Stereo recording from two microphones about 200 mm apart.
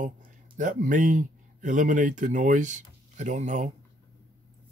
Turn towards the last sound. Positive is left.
turn(degrees=-40)  # may be behind; listen again after turning